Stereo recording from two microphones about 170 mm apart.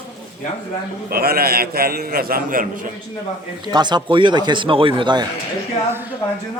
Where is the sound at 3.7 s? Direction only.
25° right (ahead or behind).